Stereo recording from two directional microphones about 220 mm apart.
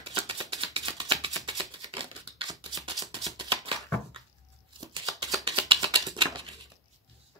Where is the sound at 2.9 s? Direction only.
20° right (ahead or behind).